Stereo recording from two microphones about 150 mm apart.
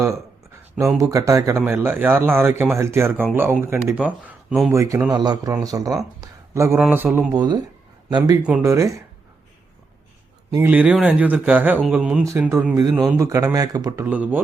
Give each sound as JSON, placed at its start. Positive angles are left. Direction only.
{"t": 0.6, "sound": "speech", "side_deg": -20}
{"t": 4.7, "sound": "speech", "side_deg": -20}
{"t": 7.3, "sound": "speech", "side_deg": -25}
{"t": 8.6, "sound": "speech", "side_deg": -20}
{"t": 10.5, "sound": "speech", "side_deg": -10}
{"t": 12.2, "sound": "speech", "side_deg": -20}
{"t": 14.0, "sound": "speech", "side_deg": -10}